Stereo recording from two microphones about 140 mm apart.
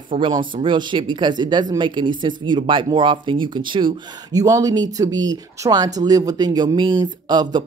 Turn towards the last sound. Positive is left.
turn(degrees=-30)  # may be behind; listen again after turning